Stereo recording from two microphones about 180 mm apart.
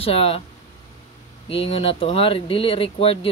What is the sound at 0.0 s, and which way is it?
Speech, 30° left (ahead or behind).